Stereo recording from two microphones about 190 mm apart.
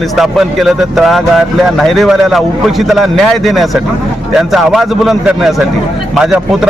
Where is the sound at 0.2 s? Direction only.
Centre (ahead or behind).